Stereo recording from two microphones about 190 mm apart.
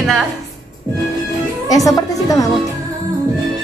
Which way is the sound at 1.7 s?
20° left (ahead or behind).